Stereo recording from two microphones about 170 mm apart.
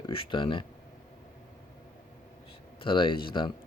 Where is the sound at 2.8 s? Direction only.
30° left (ahead or behind).